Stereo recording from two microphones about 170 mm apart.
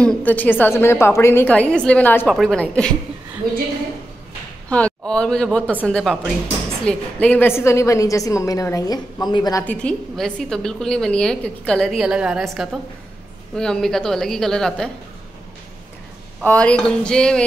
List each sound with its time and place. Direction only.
0.0 s a woman's voice: 5° left (ahead or behind)
3.4 s a woman's voice: 60° right (ahead or behind)
4.6 s a man's voice: 5° left (ahead or behind)
9.7 s a woman's voice: 5° left (ahead or behind)
16.4 s a woman's voice: 5° left (ahead or behind)